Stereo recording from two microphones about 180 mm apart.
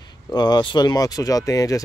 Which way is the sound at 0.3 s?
25° left (ahead or behind).